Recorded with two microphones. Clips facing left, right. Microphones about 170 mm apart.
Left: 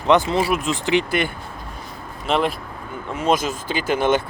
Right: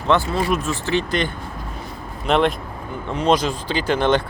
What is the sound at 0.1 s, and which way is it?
Speech, 20° left (ahead or behind).